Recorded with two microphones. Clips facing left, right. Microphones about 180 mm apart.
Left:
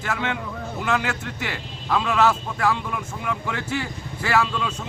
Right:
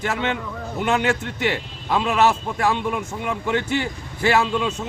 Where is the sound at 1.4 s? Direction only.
25° right (ahead or behind).